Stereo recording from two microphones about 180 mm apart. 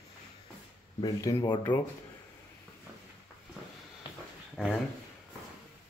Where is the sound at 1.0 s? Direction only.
20° left (ahead or behind).